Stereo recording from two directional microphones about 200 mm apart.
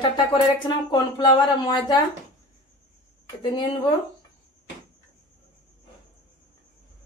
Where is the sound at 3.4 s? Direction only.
20° left (ahead or behind).